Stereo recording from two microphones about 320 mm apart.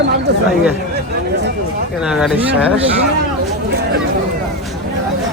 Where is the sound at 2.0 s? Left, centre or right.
Centre.